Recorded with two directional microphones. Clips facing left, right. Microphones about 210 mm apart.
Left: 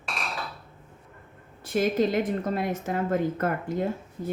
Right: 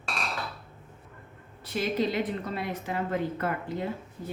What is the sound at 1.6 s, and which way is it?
A woman's voice, 50° left (ahead or behind).